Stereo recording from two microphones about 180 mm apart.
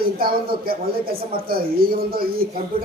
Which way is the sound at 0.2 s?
55° right (ahead or behind).